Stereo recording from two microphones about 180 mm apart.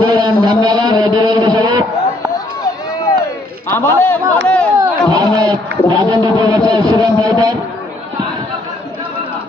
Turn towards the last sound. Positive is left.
turn(degrees=-20)  # may be behind; listen again after turning